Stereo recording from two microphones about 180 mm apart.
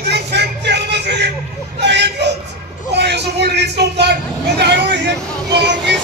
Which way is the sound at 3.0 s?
70° right (ahead or behind).